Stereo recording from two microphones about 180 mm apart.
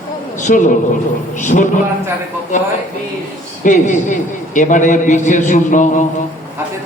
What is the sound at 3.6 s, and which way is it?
A man's voice, 45° left (ahead or behind).